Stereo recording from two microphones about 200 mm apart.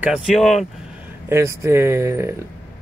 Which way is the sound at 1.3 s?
15° right (ahead or behind).